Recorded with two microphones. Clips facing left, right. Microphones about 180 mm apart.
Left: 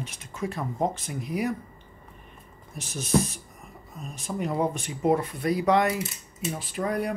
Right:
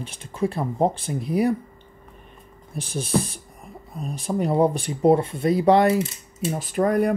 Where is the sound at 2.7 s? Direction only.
30° right (ahead or behind).